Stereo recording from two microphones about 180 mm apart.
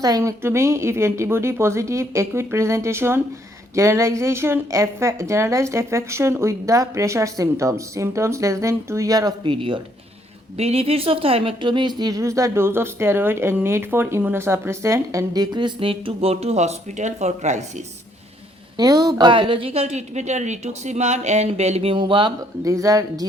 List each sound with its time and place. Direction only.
0.0 s a woman's voice: 20° right (ahead or behind); by 17.8 s 40° right (ahead or behind)
18.8 s a woman's voice: 20° right (ahead or behind)